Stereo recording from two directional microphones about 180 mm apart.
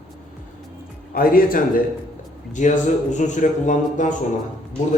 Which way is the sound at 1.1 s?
55° left (ahead or behind).